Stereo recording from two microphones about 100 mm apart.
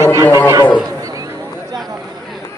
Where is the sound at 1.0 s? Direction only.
35° right (ahead or behind).